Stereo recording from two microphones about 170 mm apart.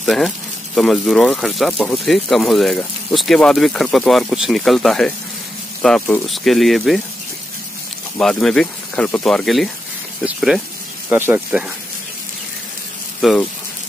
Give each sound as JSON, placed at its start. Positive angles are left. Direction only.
{"t": 0.0, "sound": "speech", "side_deg": 0}
{"t": 8.2, "sound": "speech", "side_deg": 0}
{"t": 13.2, "sound": "speech", "side_deg": 0}